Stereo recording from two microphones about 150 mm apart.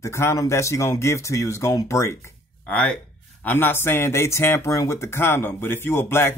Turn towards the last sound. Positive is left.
turn(degrees=15)  # may be behind; listen again after turning